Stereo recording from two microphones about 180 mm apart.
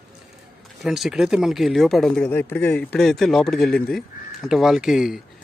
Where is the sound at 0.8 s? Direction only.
Centre (ahead or behind).